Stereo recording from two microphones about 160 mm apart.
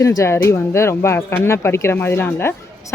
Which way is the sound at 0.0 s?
20° left (ahead or behind).